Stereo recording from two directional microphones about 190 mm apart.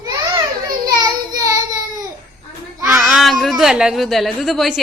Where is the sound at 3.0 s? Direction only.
Centre (ahead or behind).